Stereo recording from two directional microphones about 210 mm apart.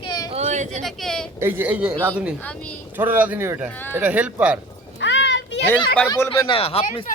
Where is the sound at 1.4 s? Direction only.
10° right (ahead or behind).